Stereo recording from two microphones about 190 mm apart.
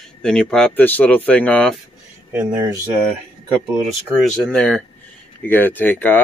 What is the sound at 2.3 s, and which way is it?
Speech, 10° right (ahead or behind).